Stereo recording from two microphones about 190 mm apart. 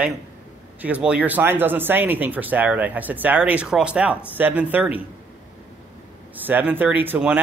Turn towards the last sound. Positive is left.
turn(degrees=-10)  # may be behind; listen again after turning